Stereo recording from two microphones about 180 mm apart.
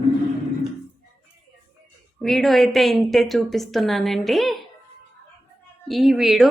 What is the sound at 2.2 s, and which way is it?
A woman's voice, centre (ahead or behind).